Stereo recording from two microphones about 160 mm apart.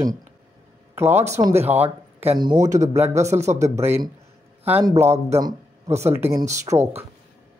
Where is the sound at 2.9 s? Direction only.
15° right (ahead or behind).